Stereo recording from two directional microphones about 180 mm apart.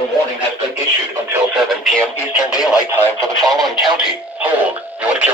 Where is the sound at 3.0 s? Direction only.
15° right (ahead or behind).